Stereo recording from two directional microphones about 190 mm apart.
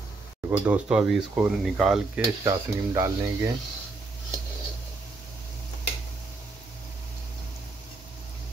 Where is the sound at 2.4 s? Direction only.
15° right (ahead or behind).